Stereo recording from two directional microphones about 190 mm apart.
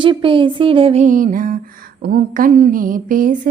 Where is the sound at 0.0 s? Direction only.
25° right (ahead or behind).